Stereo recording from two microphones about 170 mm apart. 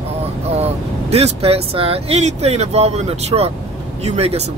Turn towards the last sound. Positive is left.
turn(degrees=-40)  # may be behind; listen again after turning